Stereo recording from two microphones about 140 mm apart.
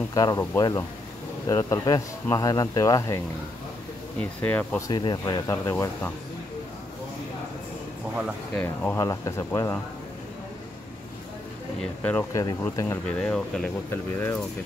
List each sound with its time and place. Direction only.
0.1 s speech: 25° left (ahead or behind)
4.2 s speech: 10° left (ahead or behind)
4.8 s speech: 30° left (ahead or behind)
8.5 s speech: 15° left (ahead or behind)
11.8 s speech: 10° left (ahead or behind)
12.3 s speech: 25° left (ahead or behind); by 13.7 s 5° left (ahead or behind)